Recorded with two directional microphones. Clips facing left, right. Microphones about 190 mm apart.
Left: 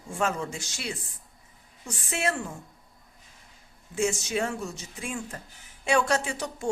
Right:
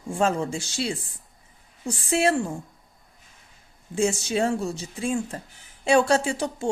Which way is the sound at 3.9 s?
30° right (ahead or behind).